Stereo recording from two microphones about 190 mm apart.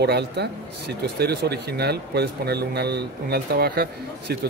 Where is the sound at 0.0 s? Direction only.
60° right (ahead or behind).